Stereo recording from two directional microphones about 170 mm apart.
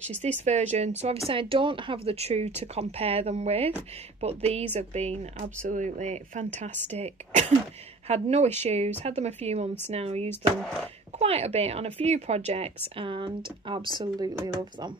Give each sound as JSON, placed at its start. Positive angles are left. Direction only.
{"t": 0.5, "sound": "speech", "side_deg": -40}